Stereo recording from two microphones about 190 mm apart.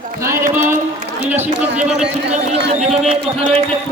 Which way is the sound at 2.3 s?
35° right (ahead or behind).